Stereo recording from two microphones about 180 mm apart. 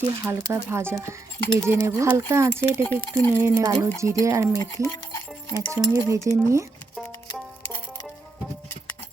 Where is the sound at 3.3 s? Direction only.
15° right (ahead or behind).